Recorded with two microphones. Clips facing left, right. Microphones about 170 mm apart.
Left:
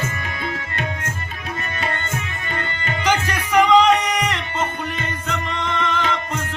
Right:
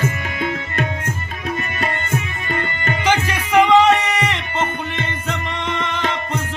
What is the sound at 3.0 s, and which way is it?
Music, 10° right (ahead or behind).